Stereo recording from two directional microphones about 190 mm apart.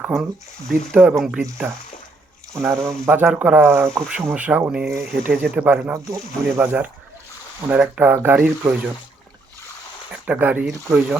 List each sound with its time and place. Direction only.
0.0 s speech: 5° right (ahead or behind)
10.2 s speech: 10° right (ahead or behind)